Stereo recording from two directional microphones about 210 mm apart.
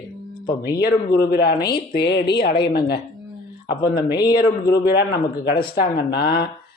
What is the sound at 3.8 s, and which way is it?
Speech, 45° left (ahead or behind).